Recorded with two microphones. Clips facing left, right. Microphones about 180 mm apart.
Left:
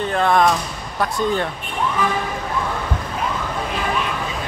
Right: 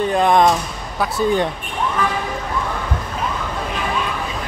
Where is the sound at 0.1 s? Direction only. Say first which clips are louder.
Right 1 dB; 15° right (ahead or behind).